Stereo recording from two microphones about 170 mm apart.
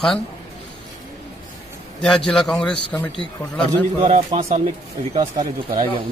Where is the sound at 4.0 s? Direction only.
40° right (ahead or behind).